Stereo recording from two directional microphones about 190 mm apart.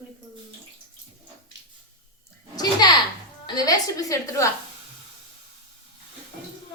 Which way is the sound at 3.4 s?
20° left (ahead or behind).